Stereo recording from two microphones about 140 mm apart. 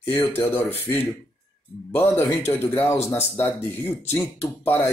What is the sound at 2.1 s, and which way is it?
Speech, 15° left (ahead or behind).